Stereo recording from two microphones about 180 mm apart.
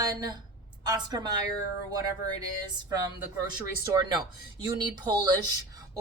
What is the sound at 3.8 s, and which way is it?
A woman's voice, 20° right (ahead or behind).